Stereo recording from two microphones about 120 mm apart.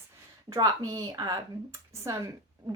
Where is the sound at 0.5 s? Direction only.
30° right (ahead or behind).